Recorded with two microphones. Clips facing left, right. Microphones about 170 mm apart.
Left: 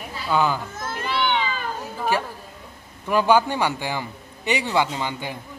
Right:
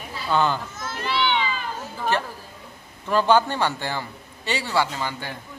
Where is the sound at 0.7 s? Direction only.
55° left (ahead or behind).